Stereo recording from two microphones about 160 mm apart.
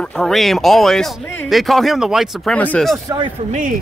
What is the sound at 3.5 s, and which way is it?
Speech, 55° right (ahead or behind).